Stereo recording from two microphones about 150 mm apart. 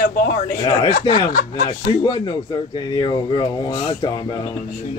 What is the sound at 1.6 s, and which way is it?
Speech, 30° left (ahead or behind).